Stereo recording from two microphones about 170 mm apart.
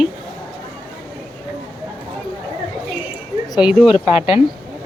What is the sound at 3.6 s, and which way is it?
Speech, 5° right (ahead or behind).